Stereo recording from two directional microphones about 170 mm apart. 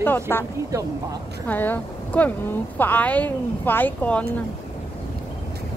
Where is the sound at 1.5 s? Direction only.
10° left (ahead or behind).